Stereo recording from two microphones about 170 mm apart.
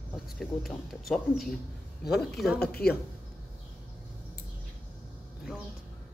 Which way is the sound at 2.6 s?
65° left (ahead or behind).